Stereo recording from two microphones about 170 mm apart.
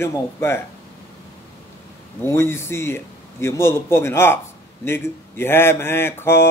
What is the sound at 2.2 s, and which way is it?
Music, 15° left (ahead or behind).